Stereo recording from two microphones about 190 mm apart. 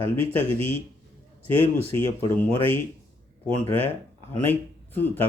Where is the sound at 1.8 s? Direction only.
10° left (ahead or behind).